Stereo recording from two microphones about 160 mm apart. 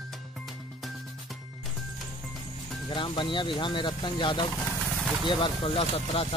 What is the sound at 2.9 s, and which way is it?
Speech, 30° left (ahead or behind).